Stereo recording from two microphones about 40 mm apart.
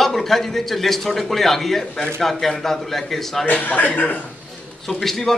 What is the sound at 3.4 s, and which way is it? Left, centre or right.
Speech, left.